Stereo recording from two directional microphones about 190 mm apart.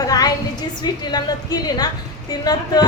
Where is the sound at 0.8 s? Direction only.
20° left (ahead or behind).